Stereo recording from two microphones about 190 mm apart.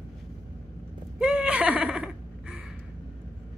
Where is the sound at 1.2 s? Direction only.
5° right (ahead or behind).